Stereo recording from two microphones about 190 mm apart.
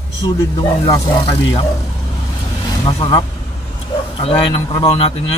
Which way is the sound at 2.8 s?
25° left (ahead or behind).